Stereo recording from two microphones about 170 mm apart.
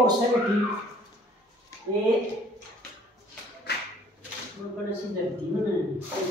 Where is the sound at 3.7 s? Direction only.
75° left (ahead or behind).